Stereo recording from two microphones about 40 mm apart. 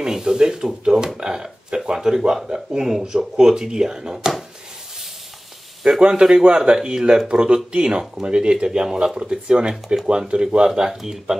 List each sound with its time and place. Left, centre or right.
0.0 s speech: centre
5.9 s speech: centre
10.7 s speech: centre